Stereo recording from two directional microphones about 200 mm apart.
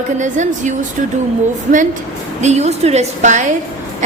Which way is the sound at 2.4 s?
35° right (ahead or behind).